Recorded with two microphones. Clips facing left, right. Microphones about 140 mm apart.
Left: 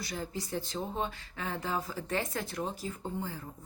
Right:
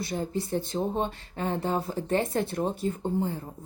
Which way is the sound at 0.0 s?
25° right (ahead or behind).